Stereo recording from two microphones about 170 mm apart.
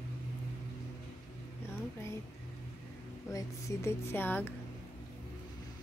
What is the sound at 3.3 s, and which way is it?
Speech, 15° left (ahead or behind).